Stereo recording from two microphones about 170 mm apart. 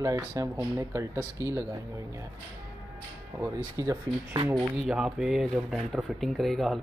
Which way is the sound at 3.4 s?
20° right (ahead or behind).